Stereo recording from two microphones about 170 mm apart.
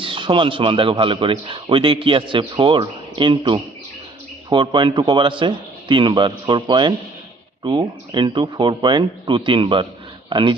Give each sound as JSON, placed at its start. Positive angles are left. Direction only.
{"t": 0.0, "sound": "a man's voice", "side_deg": -30}